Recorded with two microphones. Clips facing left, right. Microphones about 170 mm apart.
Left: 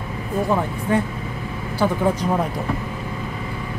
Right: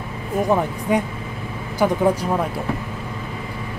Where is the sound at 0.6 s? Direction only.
15° right (ahead or behind).